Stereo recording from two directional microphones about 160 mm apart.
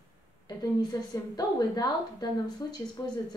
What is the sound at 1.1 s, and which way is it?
A woman's voice, 25° left (ahead or behind).